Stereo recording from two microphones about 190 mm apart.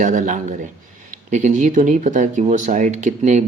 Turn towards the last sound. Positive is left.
turn(degrees=-40)  # may be behind; listen again after turning